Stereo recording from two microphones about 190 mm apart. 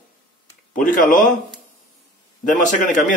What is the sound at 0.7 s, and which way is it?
Speech, 45° left (ahead or behind).